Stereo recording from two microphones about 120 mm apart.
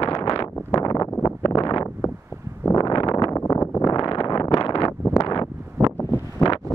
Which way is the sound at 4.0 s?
45° left (ahead or behind).